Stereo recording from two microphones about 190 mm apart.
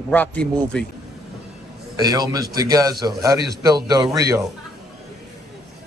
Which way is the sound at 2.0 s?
20° right (ahead or behind).